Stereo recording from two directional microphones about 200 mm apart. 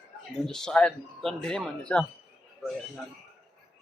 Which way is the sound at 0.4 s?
5° left (ahead or behind).